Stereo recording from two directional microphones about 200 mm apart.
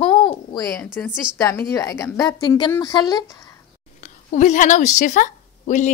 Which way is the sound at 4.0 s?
40° left (ahead or behind).